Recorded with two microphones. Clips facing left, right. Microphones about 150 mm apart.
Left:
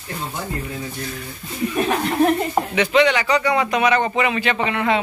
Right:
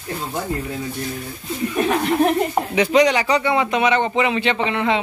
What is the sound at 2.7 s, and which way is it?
Speech, 35° right (ahead or behind).